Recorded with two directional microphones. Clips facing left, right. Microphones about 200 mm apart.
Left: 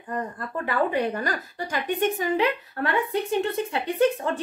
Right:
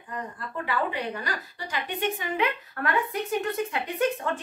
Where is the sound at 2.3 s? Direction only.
30° left (ahead or behind).